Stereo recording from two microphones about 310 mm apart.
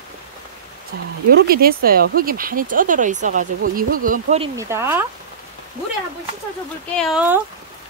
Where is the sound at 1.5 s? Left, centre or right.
Right.